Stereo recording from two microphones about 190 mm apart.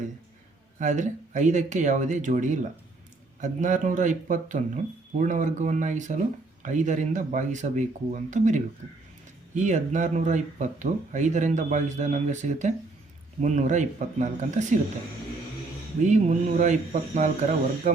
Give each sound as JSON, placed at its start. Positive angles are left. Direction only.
{"t": 0.8, "sound": "speech", "side_deg": -40}
{"t": 16.0, "sound": "speech", "side_deg": -40}